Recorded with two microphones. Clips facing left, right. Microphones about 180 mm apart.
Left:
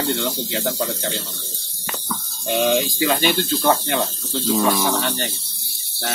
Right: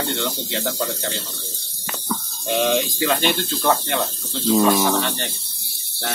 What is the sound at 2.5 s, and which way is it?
Speech, centre (ahead or behind).